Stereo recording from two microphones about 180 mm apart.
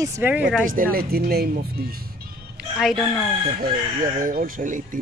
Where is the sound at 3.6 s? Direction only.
50° right (ahead or behind).